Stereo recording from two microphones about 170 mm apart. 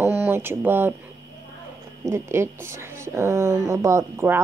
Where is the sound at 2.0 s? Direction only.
15° right (ahead or behind).